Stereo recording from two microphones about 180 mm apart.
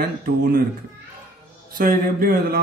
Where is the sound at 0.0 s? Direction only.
55° right (ahead or behind).